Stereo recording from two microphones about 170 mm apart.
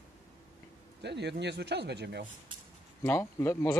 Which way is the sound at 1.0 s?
90° right.